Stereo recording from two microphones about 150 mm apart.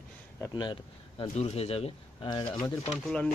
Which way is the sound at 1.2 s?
45° left (ahead or behind).